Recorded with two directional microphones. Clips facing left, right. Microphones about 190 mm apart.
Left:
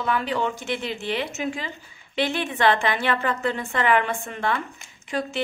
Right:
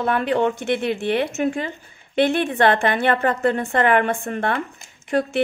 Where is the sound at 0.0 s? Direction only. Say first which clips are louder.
Right 5 dB; 55° right (ahead or behind).